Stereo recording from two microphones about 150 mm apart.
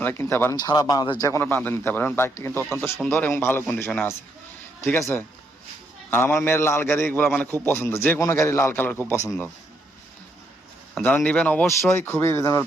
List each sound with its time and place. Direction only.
0.0 s a man's voice: 15° left (ahead or behind)
0.5 s a man's voice: 25° left (ahead or behind)
10.9 s a man's voice: 10° left (ahead or behind)